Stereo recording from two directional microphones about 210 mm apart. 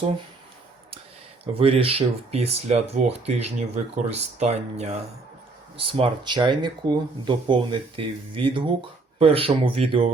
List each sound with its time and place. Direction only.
1.5 s speech: 25° right (ahead or behind)